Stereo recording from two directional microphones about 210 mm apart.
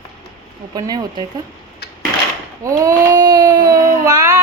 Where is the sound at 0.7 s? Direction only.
20° right (ahead or behind).